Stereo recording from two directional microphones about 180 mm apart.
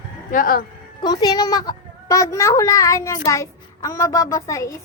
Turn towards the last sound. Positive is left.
turn(degrees=15)  # may be behind; listen again after turning